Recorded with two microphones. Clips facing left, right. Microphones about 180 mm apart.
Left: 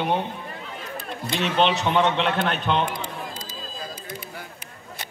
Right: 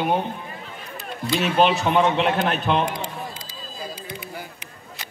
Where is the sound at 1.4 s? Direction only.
10° right (ahead or behind).